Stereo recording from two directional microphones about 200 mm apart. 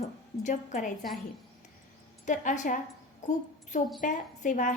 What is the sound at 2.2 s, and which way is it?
Speech, 40° left (ahead or behind).